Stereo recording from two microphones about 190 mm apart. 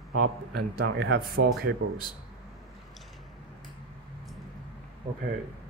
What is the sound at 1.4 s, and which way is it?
Speech, 90° right.